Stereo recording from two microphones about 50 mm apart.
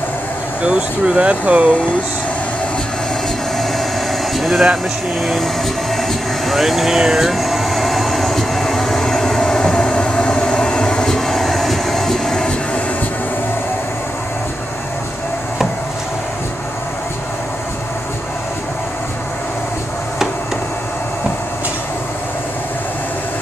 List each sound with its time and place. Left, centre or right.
0.6 s speech: right
4.4 s a sound: centre
5.9 s air conditioning: centre